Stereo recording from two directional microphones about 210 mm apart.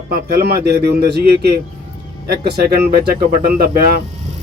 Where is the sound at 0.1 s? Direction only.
45° right (ahead or behind).